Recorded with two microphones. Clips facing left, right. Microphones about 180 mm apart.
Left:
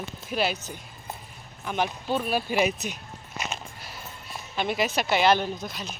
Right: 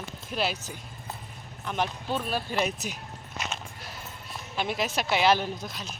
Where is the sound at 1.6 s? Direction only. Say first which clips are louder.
Left 2 dB; 5° left (ahead or behind).